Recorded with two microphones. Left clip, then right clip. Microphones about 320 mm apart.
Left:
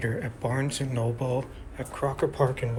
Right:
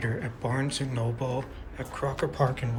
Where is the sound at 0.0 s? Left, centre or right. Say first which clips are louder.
Left 2 dB; centre.